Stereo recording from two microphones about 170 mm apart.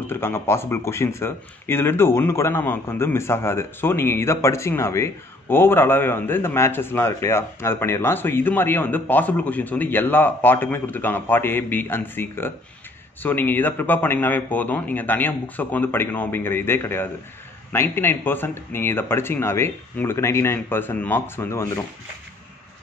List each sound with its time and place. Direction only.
0.0 s speech: 15° left (ahead or behind)